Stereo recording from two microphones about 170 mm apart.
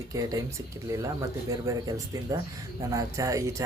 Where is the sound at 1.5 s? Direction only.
20° right (ahead or behind).